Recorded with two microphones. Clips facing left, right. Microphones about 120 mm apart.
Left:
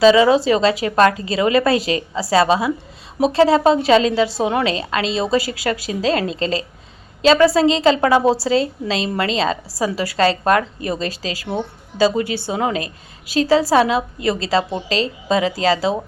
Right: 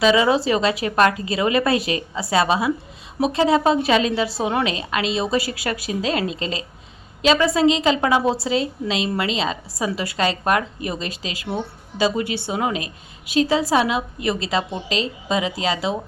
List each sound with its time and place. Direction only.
0.0 s a woman's voice: 30° left (ahead or behind)